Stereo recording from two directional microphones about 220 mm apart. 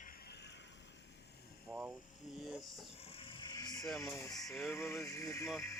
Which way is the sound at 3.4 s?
20° left (ahead or behind).